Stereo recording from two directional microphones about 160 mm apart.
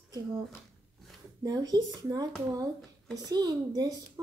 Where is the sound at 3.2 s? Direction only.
25° right (ahead or behind).